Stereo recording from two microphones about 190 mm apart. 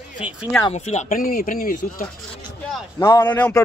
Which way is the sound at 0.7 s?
35° left (ahead or behind).